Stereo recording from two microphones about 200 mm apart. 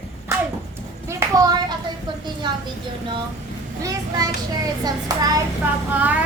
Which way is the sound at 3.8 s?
15° right (ahead or behind).